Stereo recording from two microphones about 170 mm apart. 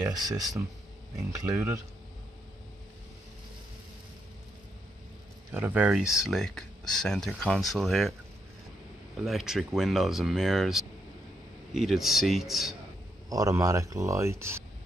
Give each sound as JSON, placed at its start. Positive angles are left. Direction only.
{"t": 0.1, "sound": "speech", "side_deg": -20}
{"t": 5.5, "sound": "speech", "side_deg": -10}
{"t": 9.1, "sound": "speech", "side_deg": 0}
{"t": 13.3, "sound": "speech", "side_deg": -20}